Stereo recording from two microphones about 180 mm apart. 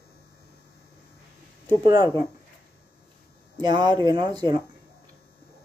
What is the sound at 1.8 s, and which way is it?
Speech, 20° right (ahead or behind).